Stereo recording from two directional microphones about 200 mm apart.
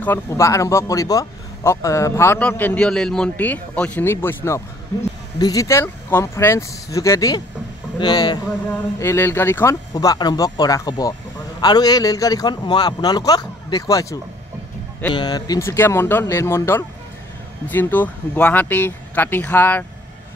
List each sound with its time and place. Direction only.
0.0 s a man's voice: 15° left (ahead or behind)